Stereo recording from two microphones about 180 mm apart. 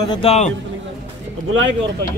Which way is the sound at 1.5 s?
90° right.